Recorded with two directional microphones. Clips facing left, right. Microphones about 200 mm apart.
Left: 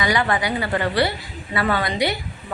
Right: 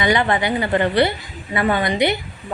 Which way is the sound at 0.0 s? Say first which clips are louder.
Right 3 dB; 25° right (ahead or behind).